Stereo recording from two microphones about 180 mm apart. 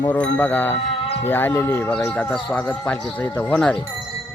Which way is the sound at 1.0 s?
35° left (ahead or behind).